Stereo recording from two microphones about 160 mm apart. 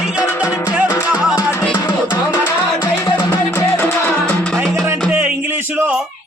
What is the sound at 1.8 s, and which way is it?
Music, 25° left (ahead or behind).